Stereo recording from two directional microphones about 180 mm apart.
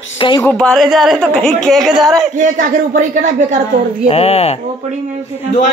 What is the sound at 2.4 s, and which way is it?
A woman's voice, 45° right (ahead or behind).